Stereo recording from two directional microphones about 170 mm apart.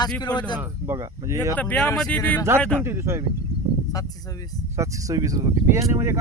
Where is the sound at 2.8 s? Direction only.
15° right (ahead or behind).